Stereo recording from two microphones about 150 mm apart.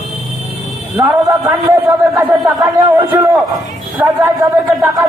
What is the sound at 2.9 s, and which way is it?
Speech, 15° right (ahead or behind).